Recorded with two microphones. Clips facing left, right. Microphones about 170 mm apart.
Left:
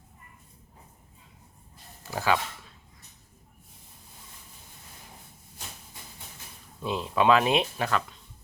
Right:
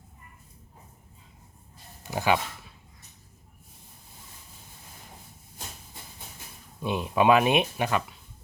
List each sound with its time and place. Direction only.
2.0 s speech: 20° right (ahead or behind)
6.8 s speech: 15° right (ahead or behind)